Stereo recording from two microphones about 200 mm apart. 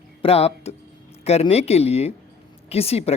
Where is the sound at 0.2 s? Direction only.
30° left (ahead or behind).